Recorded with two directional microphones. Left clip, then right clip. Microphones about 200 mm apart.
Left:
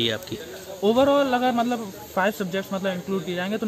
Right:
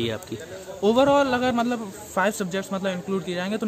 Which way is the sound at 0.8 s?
15° right (ahead or behind).